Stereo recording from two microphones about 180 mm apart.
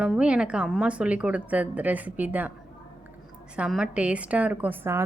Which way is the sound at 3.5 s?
5° right (ahead or behind).